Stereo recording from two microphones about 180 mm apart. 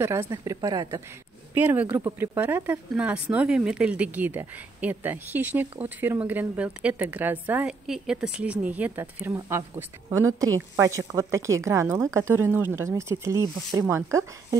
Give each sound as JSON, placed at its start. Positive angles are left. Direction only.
{"t": 0.0, "sound": "speech", "side_deg": -15}